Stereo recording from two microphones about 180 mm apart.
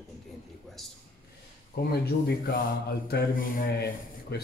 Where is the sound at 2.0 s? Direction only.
60° left (ahead or behind).